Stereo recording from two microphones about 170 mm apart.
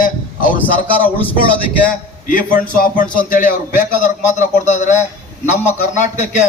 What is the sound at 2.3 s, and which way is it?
A man's voice, 50° left (ahead or behind).